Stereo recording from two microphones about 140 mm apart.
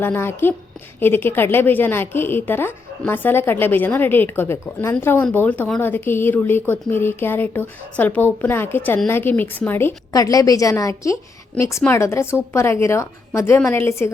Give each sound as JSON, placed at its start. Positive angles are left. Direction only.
{"t": 0.0, "sound": "speech", "side_deg": 15}
{"t": 10.1, "sound": "a woman's voice", "side_deg": 25}